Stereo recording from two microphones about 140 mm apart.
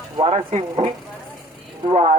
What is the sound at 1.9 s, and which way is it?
Speech, 50° right (ahead or behind).